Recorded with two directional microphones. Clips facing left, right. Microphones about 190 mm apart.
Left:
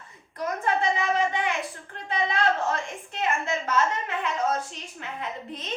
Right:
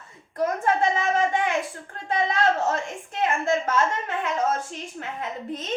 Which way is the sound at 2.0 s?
45° right (ahead or behind).